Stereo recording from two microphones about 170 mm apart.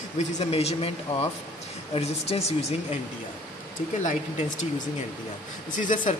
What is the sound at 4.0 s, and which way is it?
Speech, 45° left (ahead or behind).